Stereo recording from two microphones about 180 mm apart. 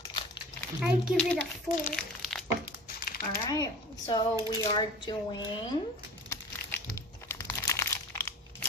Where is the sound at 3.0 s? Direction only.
55° left (ahead or behind).